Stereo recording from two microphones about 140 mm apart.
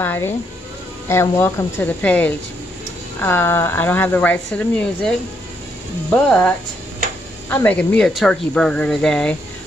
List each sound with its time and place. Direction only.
0.0 s speech: 15° left (ahead or behind)
6.1 s speech: 5° left (ahead or behind)